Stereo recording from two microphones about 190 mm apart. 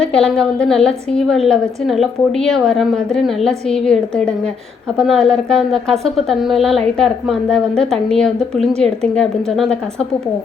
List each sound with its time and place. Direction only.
0.0 s a woman's voice: 5° left (ahead or behind)
4.9 s a woman's voice: centre (ahead or behind)